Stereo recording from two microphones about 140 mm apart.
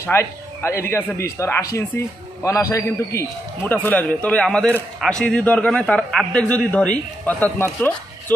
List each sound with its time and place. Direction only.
0.0 s a man's voice: 20° left (ahead or behind)